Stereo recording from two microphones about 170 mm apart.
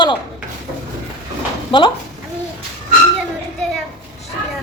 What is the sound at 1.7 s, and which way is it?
Speech, 30° left (ahead or behind).